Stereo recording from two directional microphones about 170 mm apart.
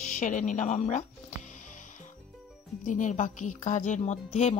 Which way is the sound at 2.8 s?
50° left (ahead or behind).